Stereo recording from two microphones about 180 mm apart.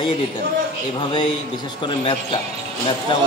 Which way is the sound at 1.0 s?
25° left (ahead or behind).